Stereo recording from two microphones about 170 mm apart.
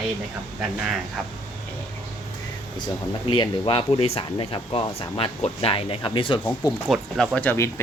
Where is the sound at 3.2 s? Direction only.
30° left (ahead or behind).